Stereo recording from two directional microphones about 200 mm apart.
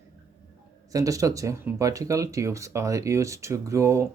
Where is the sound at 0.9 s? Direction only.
15° right (ahead or behind).